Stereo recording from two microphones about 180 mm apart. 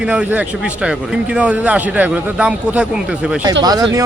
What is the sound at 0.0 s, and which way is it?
A man's voice, 5° right (ahead or behind).